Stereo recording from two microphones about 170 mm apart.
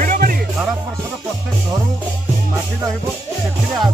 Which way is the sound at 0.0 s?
55° right (ahead or behind).